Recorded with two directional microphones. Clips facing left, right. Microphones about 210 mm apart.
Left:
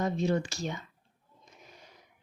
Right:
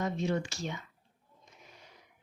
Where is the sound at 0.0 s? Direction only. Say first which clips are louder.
Left 3 dB; 35° left (ahead or behind).